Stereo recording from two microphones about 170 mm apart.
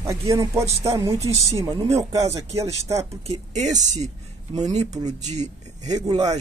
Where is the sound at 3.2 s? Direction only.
45° right (ahead or behind).